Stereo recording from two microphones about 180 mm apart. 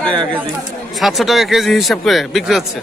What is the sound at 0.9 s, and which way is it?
Speech, centre (ahead or behind).